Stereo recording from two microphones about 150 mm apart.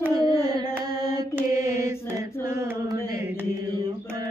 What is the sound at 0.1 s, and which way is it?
Carnatic music, 25° right (ahead or behind).